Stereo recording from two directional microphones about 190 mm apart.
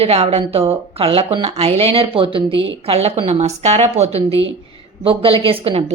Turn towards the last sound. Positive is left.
turn(degrees=-30)  # may be behind; listen again after turning